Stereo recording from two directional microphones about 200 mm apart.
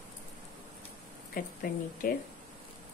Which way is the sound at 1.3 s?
45° left (ahead or behind).